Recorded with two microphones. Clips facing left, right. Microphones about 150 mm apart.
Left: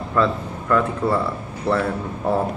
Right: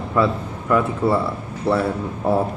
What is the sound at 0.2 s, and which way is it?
A man's voice, 10° right (ahead or behind).